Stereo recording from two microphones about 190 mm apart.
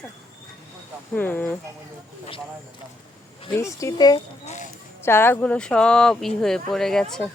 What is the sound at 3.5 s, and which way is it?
Speech, 15° left (ahead or behind).